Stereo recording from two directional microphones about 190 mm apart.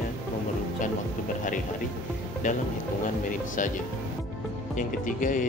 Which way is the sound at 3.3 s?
40° left (ahead or behind).